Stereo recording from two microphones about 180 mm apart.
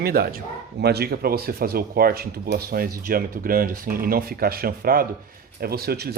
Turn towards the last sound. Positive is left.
turn(degrees=-60)  # may be behind; listen again after turning